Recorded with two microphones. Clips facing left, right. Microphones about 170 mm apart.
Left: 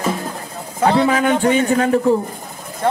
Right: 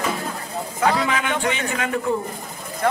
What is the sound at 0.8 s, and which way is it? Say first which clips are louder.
Speech: left 6 dB; 30° left (ahead or behind).